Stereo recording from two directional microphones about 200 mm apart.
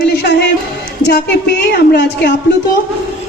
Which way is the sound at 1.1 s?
55° left (ahead or behind).